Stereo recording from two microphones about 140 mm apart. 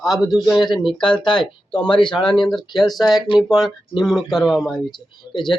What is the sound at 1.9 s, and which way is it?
Speech, 5° left (ahead or behind).